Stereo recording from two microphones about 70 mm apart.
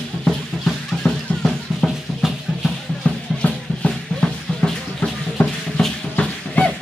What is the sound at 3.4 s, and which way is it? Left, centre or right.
Music, left.